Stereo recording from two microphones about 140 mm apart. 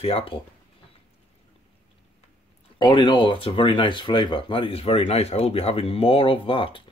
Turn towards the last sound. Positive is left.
turn(degrees=40)  # may be behind; listen again after turning